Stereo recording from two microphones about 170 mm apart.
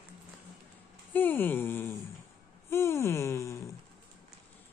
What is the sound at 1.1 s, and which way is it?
Speech, 10° left (ahead or behind).